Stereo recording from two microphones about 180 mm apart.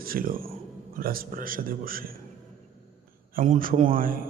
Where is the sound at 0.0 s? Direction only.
55° right (ahead or behind).